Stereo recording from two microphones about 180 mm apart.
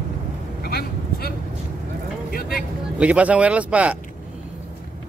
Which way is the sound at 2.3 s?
55° left (ahead or behind).